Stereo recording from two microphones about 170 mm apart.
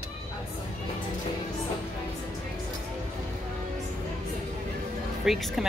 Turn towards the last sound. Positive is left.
turn(degrees=0)  # may be behind; listen again after turning